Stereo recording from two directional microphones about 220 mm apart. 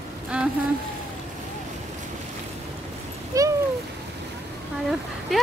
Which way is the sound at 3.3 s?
15° right (ahead or behind).